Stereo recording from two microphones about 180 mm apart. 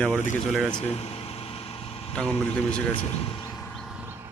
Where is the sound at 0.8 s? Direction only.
35° left (ahead or behind).